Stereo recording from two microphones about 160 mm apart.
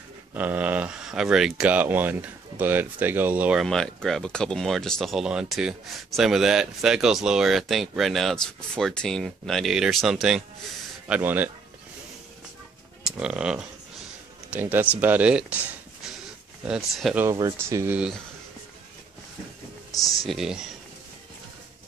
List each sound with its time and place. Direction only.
0.3 s speech: 10° right (ahead or behind)
3.6 s speech: 5° left (ahead or behind)
13.0 s speech: 5° right (ahead or behind)
17.2 s speech: 20° right (ahead or behind)
20.2 s speech: 5° right (ahead or behind)